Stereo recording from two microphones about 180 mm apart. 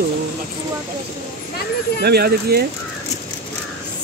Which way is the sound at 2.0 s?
60° right (ahead or behind).